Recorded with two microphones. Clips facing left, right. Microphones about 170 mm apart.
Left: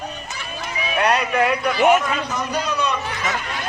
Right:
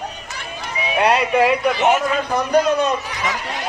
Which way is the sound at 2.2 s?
55° right (ahead or behind).